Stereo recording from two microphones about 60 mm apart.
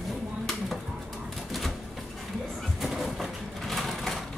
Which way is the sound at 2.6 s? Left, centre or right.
Centre.